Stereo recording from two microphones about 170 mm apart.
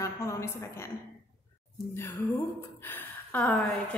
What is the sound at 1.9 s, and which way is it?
Speech, 15° left (ahead or behind).